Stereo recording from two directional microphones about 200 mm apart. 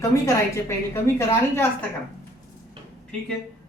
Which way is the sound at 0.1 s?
15° left (ahead or behind).